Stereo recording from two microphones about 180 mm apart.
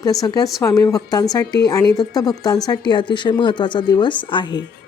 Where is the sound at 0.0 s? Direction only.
20° left (ahead or behind).